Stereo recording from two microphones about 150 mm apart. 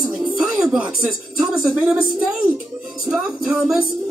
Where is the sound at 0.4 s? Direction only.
5° right (ahead or behind).